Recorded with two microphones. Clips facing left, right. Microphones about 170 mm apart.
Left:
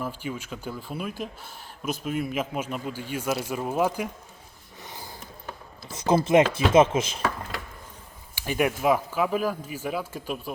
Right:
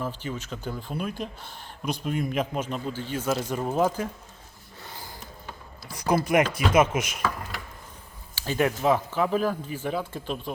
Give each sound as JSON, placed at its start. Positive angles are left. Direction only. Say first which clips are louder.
{"t": 0.0, "sound": "speech", "louder": "even", "side_deg": 10}
{"t": 4.8, "sound": "a sound", "louder": "left 1 dB", "side_deg": 20}
{"t": 5.9, "sound": "speech", "louder": "left 3 dB", "side_deg": 25}
{"t": 8.4, "sound": "speech", "louder": "even", "side_deg": 15}